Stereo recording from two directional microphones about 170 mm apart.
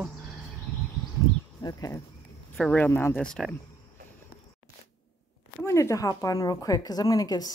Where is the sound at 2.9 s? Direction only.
15° left (ahead or behind).